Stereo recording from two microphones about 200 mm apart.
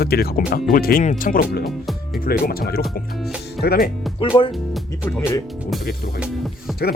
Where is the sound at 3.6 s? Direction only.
50° left (ahead or behind).